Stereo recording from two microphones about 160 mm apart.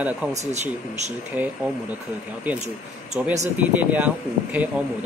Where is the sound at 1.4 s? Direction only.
10° right (ahead or behind).